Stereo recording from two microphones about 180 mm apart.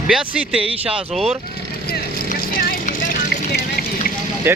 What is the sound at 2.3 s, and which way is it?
Vehicle, 55° left (ahead or behind).